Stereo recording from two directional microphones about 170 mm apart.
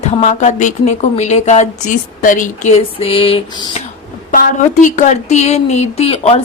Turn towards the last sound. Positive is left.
turn(degrees=35)  # may be behind; listen again after turning